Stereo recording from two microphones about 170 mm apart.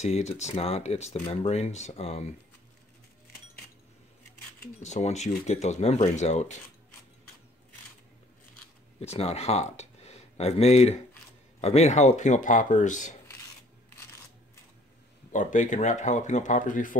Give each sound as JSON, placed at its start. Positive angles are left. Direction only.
{"t": 0.0, "sound": "speech", "side_deg": 40}
{"t": 4.8, "sound": "speech", "side_deg": 40}
{"t": 9.0, "sound": "speech", "side_deg": 40}
{"t": 15.3, "sound": "speech", "side_deg": 45}